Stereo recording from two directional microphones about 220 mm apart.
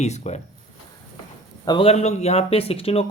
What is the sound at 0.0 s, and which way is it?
Speech, 30° left (ahead or behind).